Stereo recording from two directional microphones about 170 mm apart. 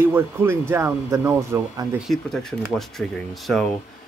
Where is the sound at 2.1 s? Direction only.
Centre (ahead or behind).